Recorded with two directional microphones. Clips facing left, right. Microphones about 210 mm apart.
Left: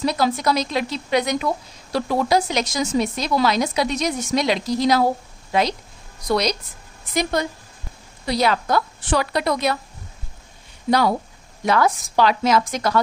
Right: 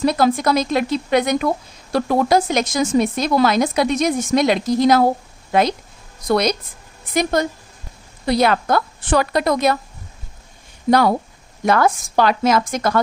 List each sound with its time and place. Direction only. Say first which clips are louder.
0.0 s speech: right 4 dB; 50° right (ahead or behind)
10.9 s speech: right 4 dB; 45° right (ahead or behind)